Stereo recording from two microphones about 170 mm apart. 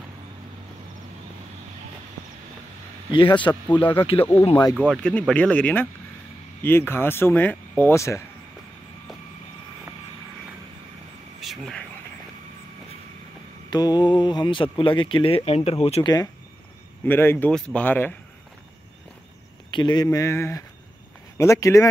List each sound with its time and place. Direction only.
3.1 s a man's voice: 25° left (ahead or behind)
4.7 s speech: centre (ahead or behind)
11.4 s speech: centre (ahead or behind)
13.7 s speech: 25° left (ahead or behind)
17.0 s speech: 10° left (ahead or behind)
19.7 s speech: 25° left (ahead or behind)